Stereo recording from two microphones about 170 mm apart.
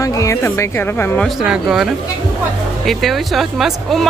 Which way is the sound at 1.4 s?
5° right (ahead or behind).